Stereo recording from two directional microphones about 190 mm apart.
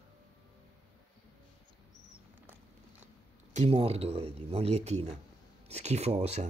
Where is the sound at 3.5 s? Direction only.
35° right (ahead or behind).